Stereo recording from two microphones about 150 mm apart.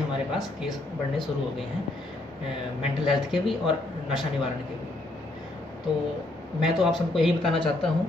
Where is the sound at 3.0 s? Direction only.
Centre (ahead or behind).